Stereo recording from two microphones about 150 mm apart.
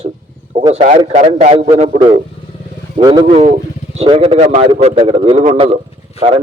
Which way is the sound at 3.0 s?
25° right (ahead or behind).